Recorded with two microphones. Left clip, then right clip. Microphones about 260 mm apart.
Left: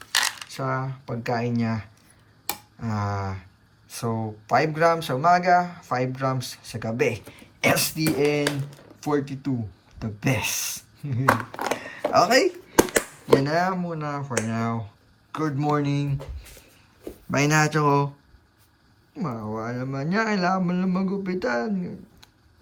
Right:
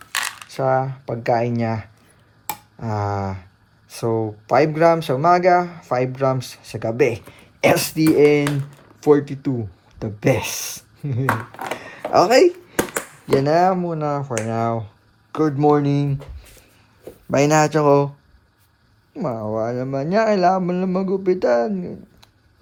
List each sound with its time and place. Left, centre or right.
0.0 s coin: centre
0.4 s speech: right
17.3 s speech: right
19.1 s speech: right